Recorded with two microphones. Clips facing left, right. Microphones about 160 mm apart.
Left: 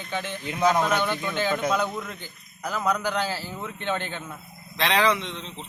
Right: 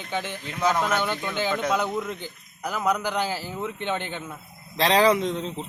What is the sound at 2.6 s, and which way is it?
Speech, 10° right (ahead or behind).